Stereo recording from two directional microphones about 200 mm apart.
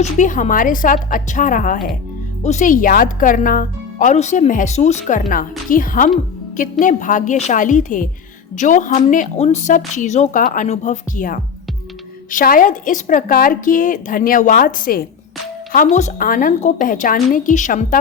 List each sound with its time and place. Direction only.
0.0 s a woman's voice: 40° left (ahead or behind)